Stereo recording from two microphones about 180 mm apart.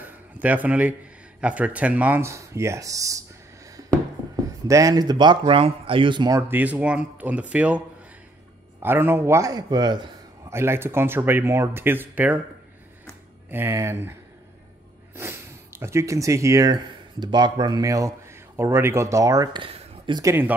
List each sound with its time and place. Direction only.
0.0 s a sound: 10° right (ahead or behind)
1.4 s speech: 10° right (ahead or behind)
4.6 s speech: 20° right (ahead or behind)
6.5 s speech: 10° right (ahead or behind)
8.8 s speech: 10° right (ahead or behind)
13.5 s speech: 15° right (ahead or behind)
15.1 s speech: 15° right (ahead or behind)